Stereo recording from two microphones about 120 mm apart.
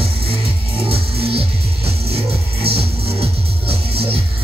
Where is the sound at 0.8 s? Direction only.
55° right (ahead or behind).